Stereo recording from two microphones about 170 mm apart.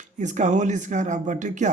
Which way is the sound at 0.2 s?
45° right (ahead or behind).